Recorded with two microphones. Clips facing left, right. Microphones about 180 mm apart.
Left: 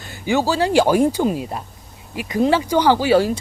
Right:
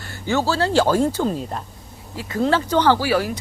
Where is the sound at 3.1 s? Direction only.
30° left (ahead or behind).